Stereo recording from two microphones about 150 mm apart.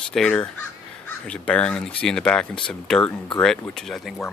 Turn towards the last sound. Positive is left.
turn(degrees=0)  # may be behind; listen again after turning